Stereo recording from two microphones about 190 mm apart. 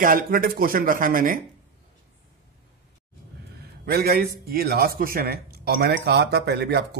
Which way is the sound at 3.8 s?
55° right (ahead or behind).